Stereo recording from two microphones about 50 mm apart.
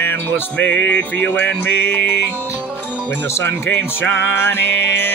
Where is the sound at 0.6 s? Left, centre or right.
Left.